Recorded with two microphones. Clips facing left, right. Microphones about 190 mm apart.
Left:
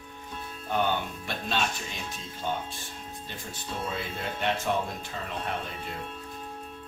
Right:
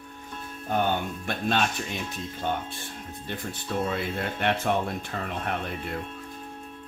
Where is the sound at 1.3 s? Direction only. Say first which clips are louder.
Right 4 dB; 55° right (ahead or behind).